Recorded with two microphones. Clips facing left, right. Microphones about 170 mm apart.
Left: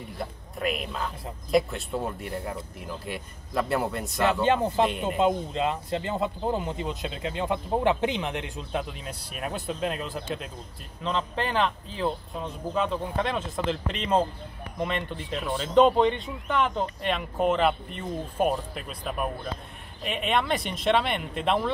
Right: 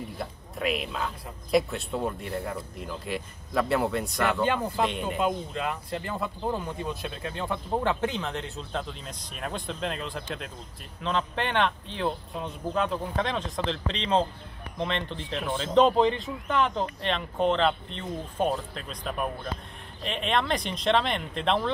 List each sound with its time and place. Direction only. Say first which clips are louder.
0.2 s speech: left 2 dB; centre (ahead or behind)
4.2 s speech: left 4 dB; 25° left (ahead or behind); by 21.6 s 5° left (ahead or behind)